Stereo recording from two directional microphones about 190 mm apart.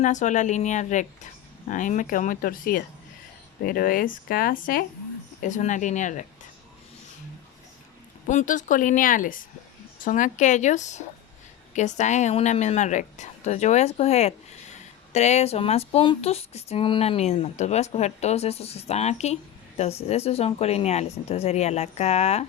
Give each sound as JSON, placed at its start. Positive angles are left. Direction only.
{"t": 0.0, "sound": "speech", "side_deg": 40}
{"t": 8.3, "sound": "speech", "side_deg": 40}